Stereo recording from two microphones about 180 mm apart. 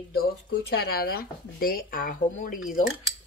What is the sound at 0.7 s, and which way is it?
Speech, 60° left (ahead or behind).